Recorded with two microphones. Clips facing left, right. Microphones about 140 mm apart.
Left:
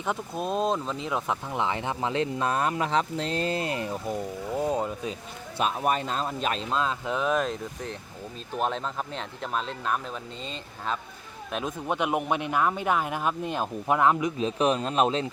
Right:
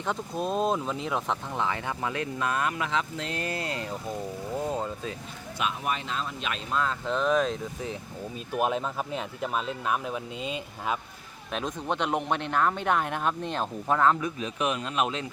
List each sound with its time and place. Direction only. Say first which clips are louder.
0.0 s speech: even; 5° left (ahead or behind)
1.5 s speech: left 4 dB; 20° left (ahead or behind)
5.5 s speech: left 5 dB; 40° left (ahead or behind)
6.7 s speech: left 1 dB; 20° left (ahead or behind); by 10.9 s 10° right (ahead or behind)
11.5 s speech: left 1 dB; 5° left (ahead or behind)
14.3 s speech: left 5 dB; 30° left (ahead or behind)